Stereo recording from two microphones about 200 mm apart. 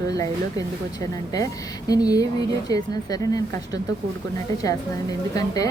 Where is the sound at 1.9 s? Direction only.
20° left (ahead or behind).